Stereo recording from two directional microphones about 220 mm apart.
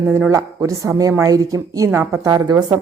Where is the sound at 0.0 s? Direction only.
10° right (ahead or behind).